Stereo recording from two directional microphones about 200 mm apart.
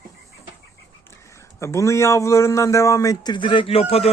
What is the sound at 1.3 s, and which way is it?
A man's voice, 15° left (ahead or behind).